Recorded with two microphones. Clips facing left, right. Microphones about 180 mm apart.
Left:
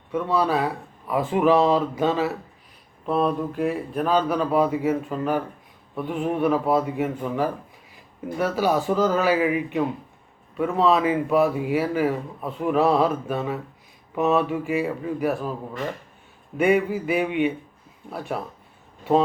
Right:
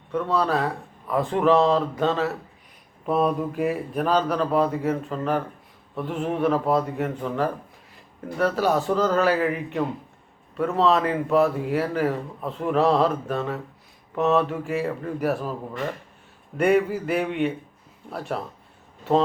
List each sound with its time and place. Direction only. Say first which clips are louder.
0.1 s speech: left 1 dB; 5° left (ahead or behind)
3.1 s speech: even; 5° right (ahead or behind)
16.6 s speech: even; centre (ahead or behind)